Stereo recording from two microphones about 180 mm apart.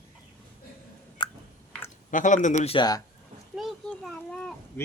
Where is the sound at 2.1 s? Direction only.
45° left (ahead or behind).